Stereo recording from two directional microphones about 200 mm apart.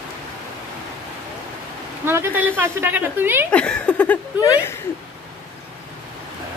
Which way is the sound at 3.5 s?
5° left (ahead or behind).